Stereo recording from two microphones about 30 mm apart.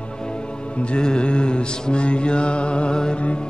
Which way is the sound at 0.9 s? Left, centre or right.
Left.